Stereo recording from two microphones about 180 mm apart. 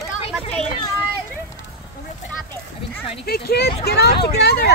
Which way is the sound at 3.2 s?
60° left (ahead or behind).